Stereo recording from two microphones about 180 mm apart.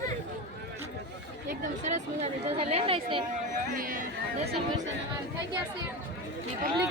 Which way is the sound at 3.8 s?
50° right (ahead or behind).